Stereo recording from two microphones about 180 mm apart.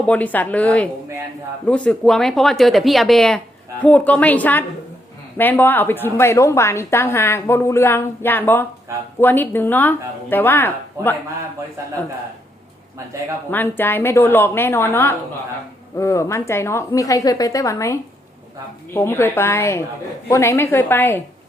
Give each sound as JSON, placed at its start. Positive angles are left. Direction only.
{"t": 0.0, "sound": "a woman's voice", "side_deg": 10}
{"t": 13.5, "sound": "a woman's voice", "side_deg": 10}
{"t": 18.9, "sound": "a woman's voice", "side_deg": 10}